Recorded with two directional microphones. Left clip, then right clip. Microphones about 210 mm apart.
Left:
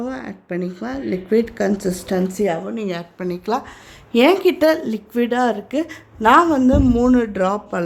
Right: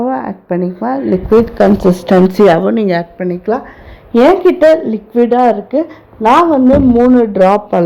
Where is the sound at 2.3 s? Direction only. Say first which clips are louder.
Right 13 dB; 35° right (ahead or behind).